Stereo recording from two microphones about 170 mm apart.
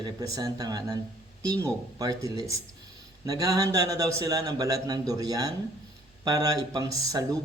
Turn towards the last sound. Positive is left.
turn(degrees=-20)  # may be behind; listen again after turning